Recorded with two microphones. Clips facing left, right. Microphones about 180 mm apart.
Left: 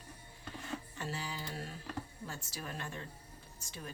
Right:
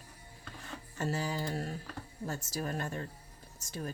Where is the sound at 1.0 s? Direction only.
45° right (ahead or behind).